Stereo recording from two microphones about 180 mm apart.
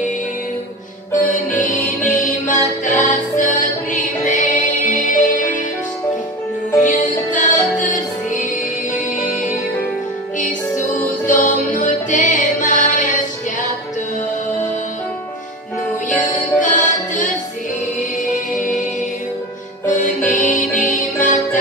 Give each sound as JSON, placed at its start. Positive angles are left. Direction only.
{"t": 1.1, "sound": "music", "side_deg": 45}
{"t": 6.8, "sound": "music", "side_deg": 45}
{"t": 11.2, "sound": "music", "side_deg": 45}
{"t": 16.5, "sound": "music", "side_deg": 45}
{"t": 18.6, "sound": "music", "side_deg": 45}
{"t": 19.9, "sound": "music", "side_deg": 45}